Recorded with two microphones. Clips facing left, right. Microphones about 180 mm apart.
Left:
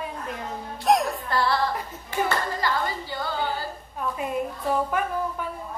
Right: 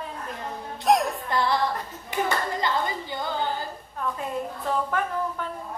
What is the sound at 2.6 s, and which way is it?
Clapping, 20° right (ahead or behind).